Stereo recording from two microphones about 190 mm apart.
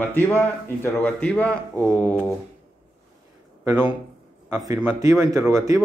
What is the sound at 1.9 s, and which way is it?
Speech, 15° right (ahead or behind).